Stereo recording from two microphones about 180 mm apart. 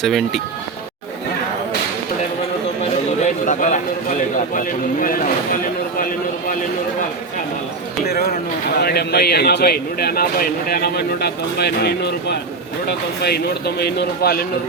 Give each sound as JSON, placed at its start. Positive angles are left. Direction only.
{"t": 0.0, "sound": "speech", "side_deg": 0}
{"t": 3.2, "sound": "a sound", "side_deg": 45}
{"t": 4.5, "sound": "speech", "side_deg": 50}
{"t": 8.0, "sound": "speech", "side_deg": 60}